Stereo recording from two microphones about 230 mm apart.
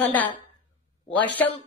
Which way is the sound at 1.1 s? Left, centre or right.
Centre.